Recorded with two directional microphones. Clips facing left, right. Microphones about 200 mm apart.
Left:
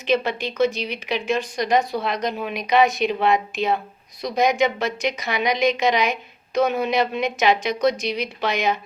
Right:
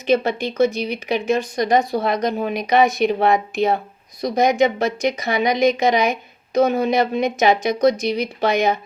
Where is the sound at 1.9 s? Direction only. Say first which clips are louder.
Right 4 dB; 50° right (ahead or behind).